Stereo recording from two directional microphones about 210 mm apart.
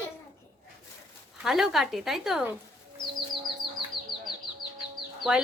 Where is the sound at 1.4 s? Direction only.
Centre (ahead or behind).